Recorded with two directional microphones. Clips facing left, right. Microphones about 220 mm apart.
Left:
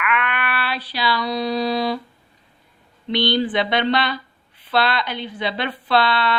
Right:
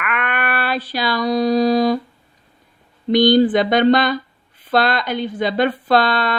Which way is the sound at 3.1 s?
45° right (ahead or behind).